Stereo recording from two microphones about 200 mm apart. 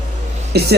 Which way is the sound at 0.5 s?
55° right (ahead or behind).